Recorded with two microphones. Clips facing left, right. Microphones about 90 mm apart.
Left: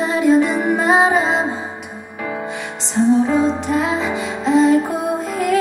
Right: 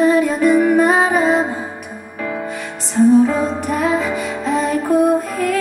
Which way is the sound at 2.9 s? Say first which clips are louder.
Right 3 dB; 25° left (ahead or behind).